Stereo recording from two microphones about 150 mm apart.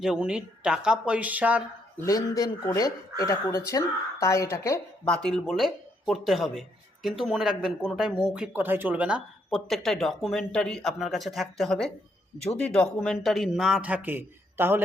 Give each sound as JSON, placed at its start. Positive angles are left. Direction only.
{"t": 0.0, "sound": "speech", "side_deg": -5}
{"t": 2.0, "sound": "speech", "side_deg": 25}
{"t": 5.0, "sound": "speech", "side_deg": 5}